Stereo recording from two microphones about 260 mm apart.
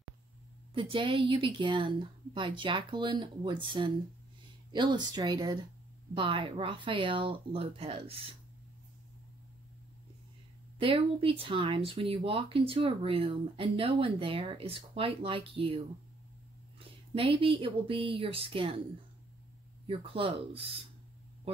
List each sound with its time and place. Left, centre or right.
0.7 s speech: centre
10.8 s speech: right
17.1 s speech: right
19.9 s speech: right